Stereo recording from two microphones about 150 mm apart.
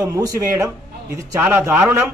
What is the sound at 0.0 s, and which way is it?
A man's voice, 20° right (ahead or behind).